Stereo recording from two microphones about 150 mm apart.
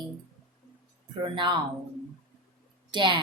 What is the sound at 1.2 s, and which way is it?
Speech, 30° right (ahead or behind).